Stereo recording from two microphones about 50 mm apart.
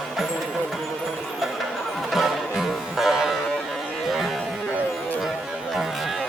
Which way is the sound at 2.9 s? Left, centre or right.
Centre.